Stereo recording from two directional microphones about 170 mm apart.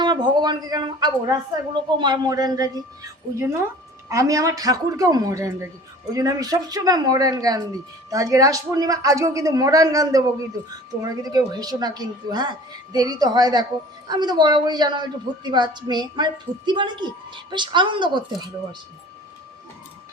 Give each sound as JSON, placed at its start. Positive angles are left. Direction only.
{"t": 0.0, "sound": "a woman's voice", "side_deg": -25}
{"t": 4.1, "sound": "a woman's voice", "side_deg": -20}